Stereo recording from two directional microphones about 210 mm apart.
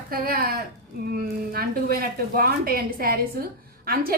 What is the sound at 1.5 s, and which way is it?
A woman's voice, 45° right (ahead or behind).